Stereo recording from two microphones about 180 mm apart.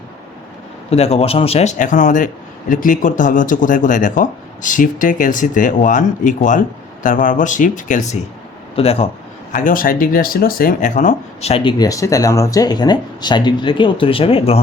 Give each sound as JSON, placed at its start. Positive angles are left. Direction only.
{"t": 0.9, "sound": "a man's voice", "side_deg": 35}
{"t": 9.5, "sound": "speech", "side_deg": 45}